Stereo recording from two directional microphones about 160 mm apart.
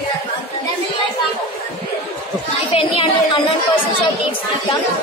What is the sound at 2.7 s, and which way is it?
Speech, 35° left (ahead or behind).